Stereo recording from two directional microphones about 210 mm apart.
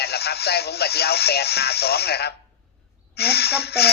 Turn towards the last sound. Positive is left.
turn(degrees=50)  # may be behind; listen again after turning